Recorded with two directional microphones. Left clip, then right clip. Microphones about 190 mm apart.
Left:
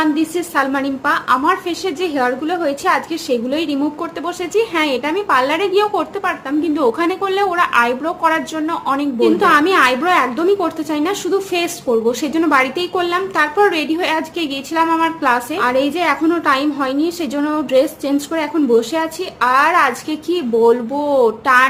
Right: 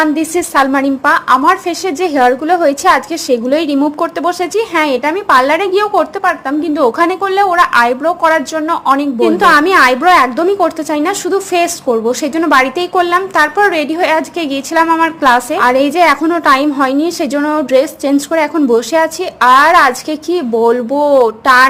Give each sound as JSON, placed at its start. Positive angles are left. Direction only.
{"t": 0.0, "sound": "a woman's voice", "side_deg": -40}
{"t": 15.2, "sound": "a woman's voice", "side_deg": -45}